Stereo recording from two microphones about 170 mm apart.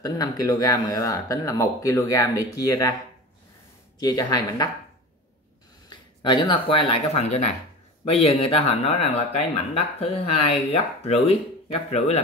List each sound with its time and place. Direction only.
0.0 s speech: 20° left (ahead or behind)
4.0 s speech: 20° left (ahead or behind)
5.9 s speech: 25° left (ahead or behind)
9.9 s speech: 35° left (ahead or behind)